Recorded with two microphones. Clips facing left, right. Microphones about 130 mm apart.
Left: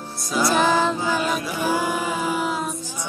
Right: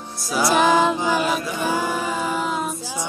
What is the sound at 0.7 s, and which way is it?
Music, 15° right (ahead or behind).